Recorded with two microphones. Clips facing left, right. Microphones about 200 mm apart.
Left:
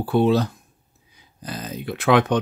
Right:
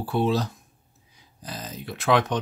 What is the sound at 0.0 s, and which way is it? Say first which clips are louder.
Speech: left 5 dB; 60° left (ahead or behind).